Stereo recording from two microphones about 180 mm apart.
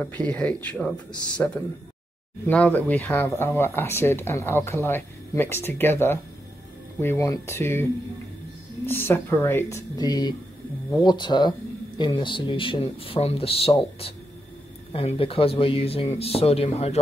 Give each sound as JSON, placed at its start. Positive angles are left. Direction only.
{"t": 0.0, "sound": "speech", "side_deg": 10}
{"t": 8.8, "sound": "speech", "side_deg": 10}